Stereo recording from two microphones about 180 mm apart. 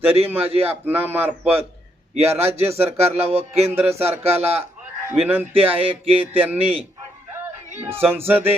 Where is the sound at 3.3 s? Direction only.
35° right (ahead or behind).